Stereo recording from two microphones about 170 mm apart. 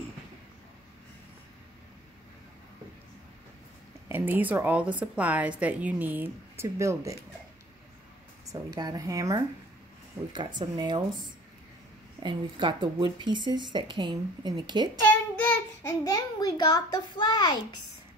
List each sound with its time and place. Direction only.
4.1 s a woman's voice: 10° right (ahead or behind)
8.5 s speech: 20° right (ahead or behind)
15.0 s child singing: 10° left (ahead or behind)
16.0 s a child's voice: 20° left (ahead or behind)